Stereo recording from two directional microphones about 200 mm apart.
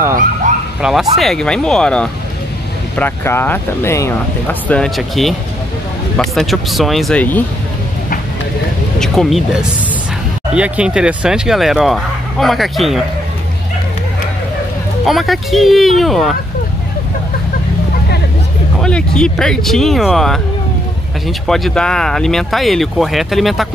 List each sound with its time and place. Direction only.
0.8 s speech: centre (ahead or behind)
9.0 s speech: centre (ahead or behind)
15.0 s speech: centre (ahead or behind)
18.8 s speech: 5° left (ahead or behind)